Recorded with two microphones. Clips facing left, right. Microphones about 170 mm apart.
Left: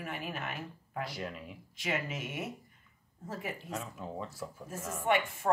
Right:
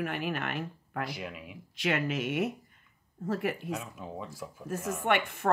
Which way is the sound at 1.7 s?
75° right (ahead or behind).